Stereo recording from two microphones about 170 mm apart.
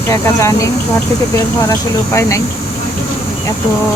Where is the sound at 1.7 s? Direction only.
20° left (ahead or behind).